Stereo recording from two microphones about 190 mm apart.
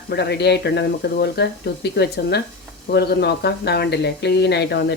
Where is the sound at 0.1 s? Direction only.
60° left (ahead or behind).